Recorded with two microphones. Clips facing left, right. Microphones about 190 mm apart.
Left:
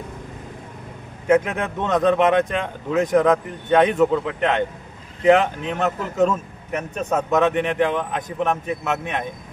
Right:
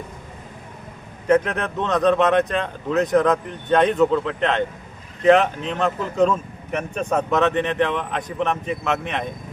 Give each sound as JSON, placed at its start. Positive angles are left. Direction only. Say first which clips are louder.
{"t": 1.3, "sound": "speech", "louder": "even", "side_deg": 10}